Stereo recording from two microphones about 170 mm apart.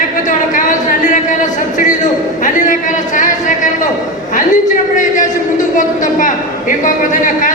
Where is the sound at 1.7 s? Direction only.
50° left (ahead or behind).